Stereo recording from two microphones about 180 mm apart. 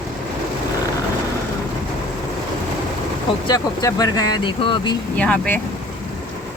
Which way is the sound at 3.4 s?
20° left (ahead or behind).